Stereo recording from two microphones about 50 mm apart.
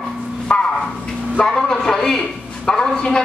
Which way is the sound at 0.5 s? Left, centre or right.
Left.